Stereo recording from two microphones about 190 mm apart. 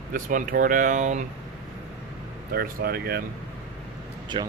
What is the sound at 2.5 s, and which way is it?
Speech, 50° right (ahead or behind).